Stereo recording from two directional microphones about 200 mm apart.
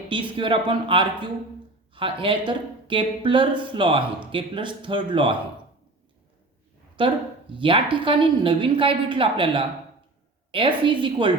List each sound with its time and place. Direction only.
0.1 s a woman's voice: 25° right (ahead or behind)
7.0 s a woman's voice: 25° right (ahead or behind)